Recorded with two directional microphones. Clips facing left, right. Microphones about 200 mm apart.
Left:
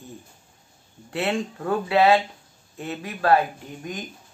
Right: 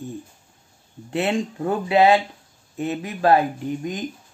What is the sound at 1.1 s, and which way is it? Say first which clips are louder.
Speech: right 3 dB; 20° right (ahead or behind).